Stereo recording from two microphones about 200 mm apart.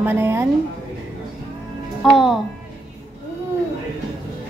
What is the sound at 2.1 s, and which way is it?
Speech, centre (ahead or behind).